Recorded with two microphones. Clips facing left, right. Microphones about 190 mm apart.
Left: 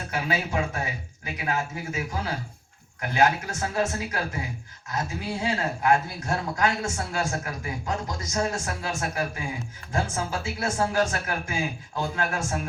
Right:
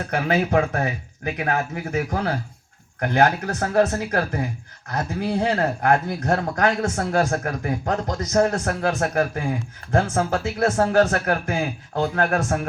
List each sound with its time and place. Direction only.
0.1 s speech: 55° right (ahead or behind)